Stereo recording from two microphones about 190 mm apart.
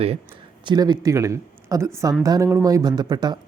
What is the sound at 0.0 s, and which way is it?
Speech, 30° right (ahead or behind).